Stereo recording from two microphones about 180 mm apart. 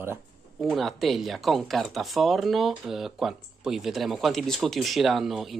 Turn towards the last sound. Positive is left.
turn(degrees=0)  # may be behind; listen again after turning